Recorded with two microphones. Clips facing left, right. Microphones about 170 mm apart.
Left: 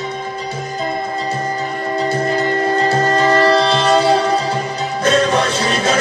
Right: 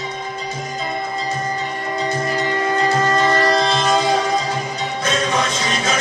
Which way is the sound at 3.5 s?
35° left (ahead or behind).